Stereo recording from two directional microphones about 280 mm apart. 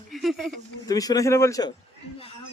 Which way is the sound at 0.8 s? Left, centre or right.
Centre.